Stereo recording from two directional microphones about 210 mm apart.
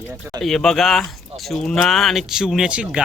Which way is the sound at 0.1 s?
15° right (ahead or behind).